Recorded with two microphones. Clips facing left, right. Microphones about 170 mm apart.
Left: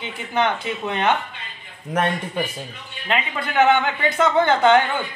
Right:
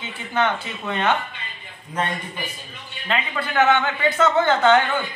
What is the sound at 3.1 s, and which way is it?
Speech, 15° left (ahead or behind).